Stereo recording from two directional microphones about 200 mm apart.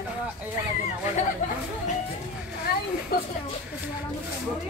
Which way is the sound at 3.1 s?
50° left (ahead or behind).